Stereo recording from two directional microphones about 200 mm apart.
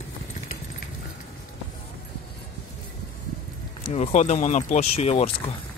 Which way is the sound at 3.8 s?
30° left (ahead or behind).